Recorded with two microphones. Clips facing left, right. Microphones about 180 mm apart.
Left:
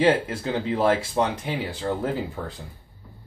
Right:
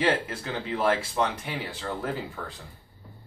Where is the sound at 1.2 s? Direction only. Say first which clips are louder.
Left 4 dB; 30° left (ahead or behind).